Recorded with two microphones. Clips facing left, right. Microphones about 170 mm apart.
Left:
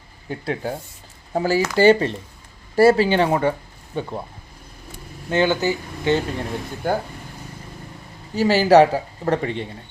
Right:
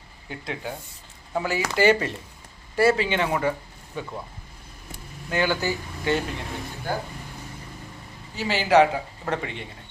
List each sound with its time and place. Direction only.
0.3 s a man's voice: 40° left (ahead or behind)
5.3 s speech: 25° left (ahead or behind)
6.8 s speech: 50° left (ahead or behind)
8.4 s a man's voice: 40° left (ahead or behind)